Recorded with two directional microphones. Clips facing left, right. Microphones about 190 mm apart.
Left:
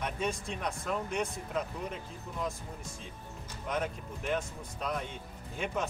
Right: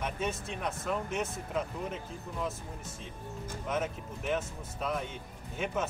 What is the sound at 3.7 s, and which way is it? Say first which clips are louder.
Speech: even; 5° right (ahead or behind).